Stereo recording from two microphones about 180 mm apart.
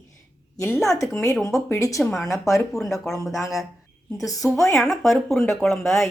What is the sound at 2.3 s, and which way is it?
Speech, 15° left (ahead or behind).